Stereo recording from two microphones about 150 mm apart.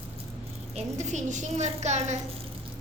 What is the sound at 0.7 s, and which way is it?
A woman's voice, 50° right (ahead or behind).